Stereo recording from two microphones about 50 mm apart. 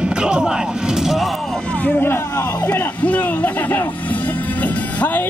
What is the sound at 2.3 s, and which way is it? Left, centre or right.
Speech, left.